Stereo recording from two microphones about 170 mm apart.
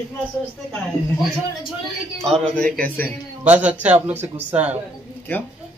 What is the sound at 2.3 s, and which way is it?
Speech, 5° left (ahead or behind).